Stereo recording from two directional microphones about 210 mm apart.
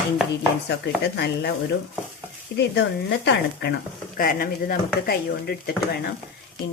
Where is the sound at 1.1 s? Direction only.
55° left (ahead or behind).